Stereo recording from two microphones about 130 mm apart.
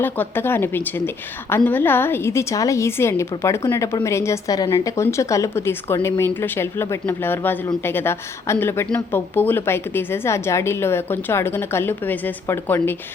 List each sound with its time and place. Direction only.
0.0 s a woman's voice: 15° left (ahead or behind)